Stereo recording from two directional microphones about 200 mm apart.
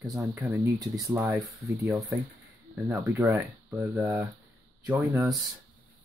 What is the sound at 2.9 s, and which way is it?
Speech, 15° right (ahead or behind).